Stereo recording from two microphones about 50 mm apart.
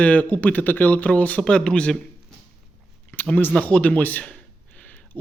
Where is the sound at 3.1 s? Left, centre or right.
Left.